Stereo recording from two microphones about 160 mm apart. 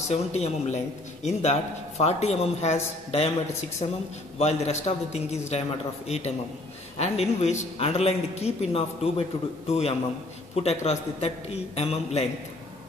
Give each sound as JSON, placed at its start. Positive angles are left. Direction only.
{"t": 0.1, "sound": "a man's voice", "side_deg": 45}